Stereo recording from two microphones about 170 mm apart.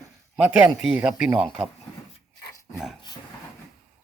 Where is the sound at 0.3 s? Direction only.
10° right (ahead or behind).